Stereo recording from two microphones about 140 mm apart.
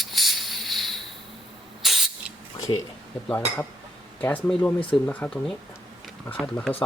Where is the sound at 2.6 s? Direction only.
25° left (ahead or behind).